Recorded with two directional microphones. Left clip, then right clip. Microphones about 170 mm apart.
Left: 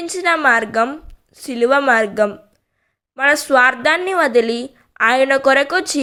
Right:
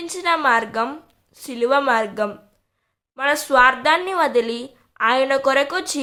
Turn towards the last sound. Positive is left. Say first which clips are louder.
# left 5 dB
turn(degrees=20)  # may be behind; listen again after turning